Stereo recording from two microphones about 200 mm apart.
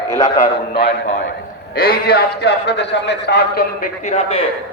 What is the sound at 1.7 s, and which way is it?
A man's voice, 50° left (ahead or behind).